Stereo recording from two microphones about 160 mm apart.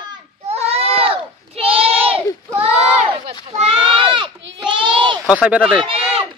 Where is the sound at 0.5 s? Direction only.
40° right (ahead or behind).